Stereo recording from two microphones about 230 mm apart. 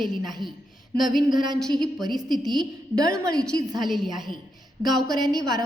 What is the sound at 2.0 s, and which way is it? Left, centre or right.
A woman's voice, centre.